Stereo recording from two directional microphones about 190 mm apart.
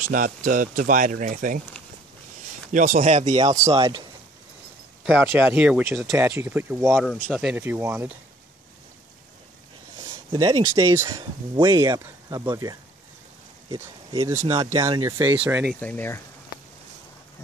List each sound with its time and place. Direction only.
0.1 s speech: 45° right (ahead or behind)
2.7 s speech: 45° right (ahead or behind)
5.0 s speech: 10° right (ahead or behind)
6.9 s speech: centre (ahead or behind)
10.3 s speech: 20° right (ahead or behind)
14.1 s speech: 15° right (ahead or behind)
15.7 s speech: 10° left (ahead or behind)